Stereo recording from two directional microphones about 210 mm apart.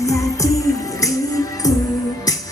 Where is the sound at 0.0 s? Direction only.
15° left (ahead or behind).